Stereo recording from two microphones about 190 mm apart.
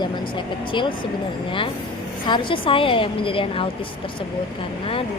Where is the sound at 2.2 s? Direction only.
25° left (ahead or behind).